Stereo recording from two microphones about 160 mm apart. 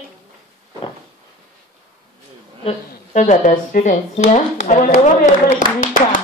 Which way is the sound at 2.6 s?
50° left (ahead or behind).